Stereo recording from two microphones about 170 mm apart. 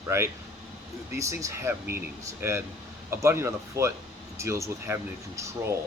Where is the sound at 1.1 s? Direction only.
20° right (ahead or behind).